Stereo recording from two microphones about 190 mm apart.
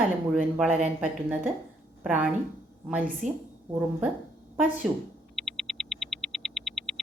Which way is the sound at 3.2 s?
40° right (ahead or behind).